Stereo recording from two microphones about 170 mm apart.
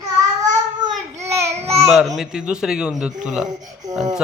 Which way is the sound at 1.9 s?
Centre (ahead or behind).